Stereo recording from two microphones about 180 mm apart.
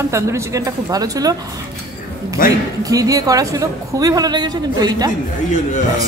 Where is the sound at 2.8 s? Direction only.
20° right (ahead or behind).